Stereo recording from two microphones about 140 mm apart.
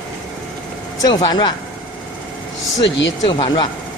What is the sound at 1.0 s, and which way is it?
Speech, 30° left (ahead or behind).